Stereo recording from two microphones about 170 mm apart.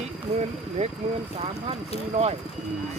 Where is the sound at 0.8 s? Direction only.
40° right (ahead or behind).